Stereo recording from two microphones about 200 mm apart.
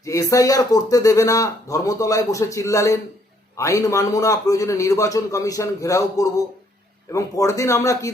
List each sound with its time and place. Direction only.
0.0 s speech: 15° left (ahead or behind)